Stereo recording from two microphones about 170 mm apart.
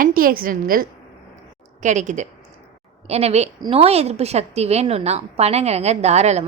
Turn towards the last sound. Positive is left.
turn(degrees=-40)  # may be behind; listen again after turning